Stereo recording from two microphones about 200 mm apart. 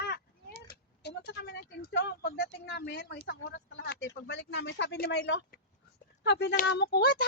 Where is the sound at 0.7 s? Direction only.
55° left (ahead or behind).